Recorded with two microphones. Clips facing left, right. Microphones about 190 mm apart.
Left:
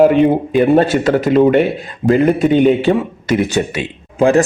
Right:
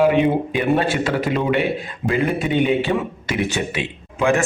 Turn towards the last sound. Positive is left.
turn(degrees=35)  # may be behind; listen again after turning